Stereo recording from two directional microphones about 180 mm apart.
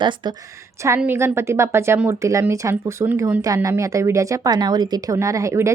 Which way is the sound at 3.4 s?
20° right (ahead or behind).